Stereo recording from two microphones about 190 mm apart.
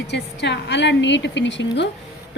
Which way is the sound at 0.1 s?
65° left (ahead or behind).